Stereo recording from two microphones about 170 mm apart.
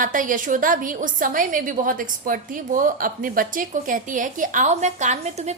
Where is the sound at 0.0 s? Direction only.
50° right (ahead or behind).